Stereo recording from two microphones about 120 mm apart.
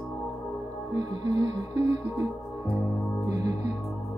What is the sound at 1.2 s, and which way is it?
Music, 30° right (ahead or behind).